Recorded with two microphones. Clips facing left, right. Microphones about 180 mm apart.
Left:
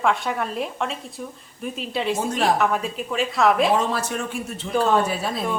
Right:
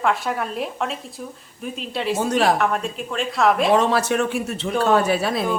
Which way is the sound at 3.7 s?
75° right (ahead or behind).